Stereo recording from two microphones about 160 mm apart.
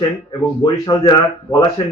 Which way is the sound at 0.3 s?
25° left (ahead or behind).